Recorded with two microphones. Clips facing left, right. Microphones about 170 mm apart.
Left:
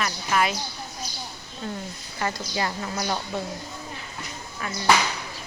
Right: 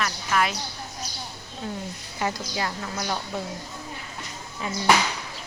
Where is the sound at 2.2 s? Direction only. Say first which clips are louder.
Right 1 dB; 15° right (ahead or behind).